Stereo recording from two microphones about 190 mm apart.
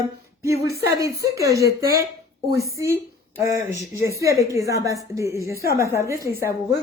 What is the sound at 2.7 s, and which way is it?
A woman's voice, 15° right (ahead or behind).